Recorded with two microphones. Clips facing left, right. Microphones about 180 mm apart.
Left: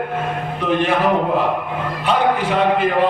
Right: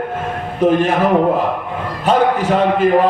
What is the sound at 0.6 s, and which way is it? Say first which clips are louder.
Speech: right 6 dB; 45° right (ahead or behind).